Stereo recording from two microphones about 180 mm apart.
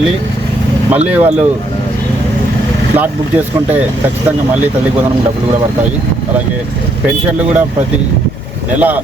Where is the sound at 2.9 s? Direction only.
10° right (ahead or behind).